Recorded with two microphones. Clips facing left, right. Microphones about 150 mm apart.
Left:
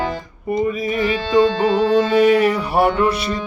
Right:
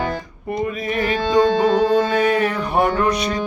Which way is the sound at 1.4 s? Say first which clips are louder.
Even; 45° right (ahead or behind).